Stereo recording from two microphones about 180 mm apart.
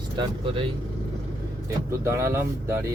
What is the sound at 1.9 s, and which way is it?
Speech, 15° right (ahead or behind).